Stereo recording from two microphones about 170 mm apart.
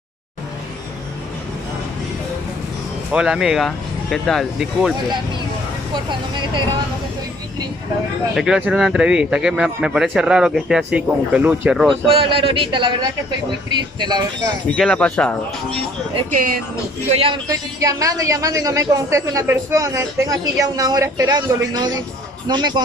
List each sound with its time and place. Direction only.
3.1 s speech: 5° right (ahead or behind)
6.0 s a woman's voice: 25° right (ahead or behind)
8.4 s speech: 5° right (ahead or behind)
12.1 s a man's voice: 30° right (ahead or behind)
13.9 s a woman's voice: 25° right (ahead or behind)
14.8 s speech: 5° left (ahead or behind)
16.3 s speech: 55° right (ahead or behind)
17.1 s a man's voice: 35° right (ahead or behind)
17.5 s a woman's voice: 20° right (ahead or behind)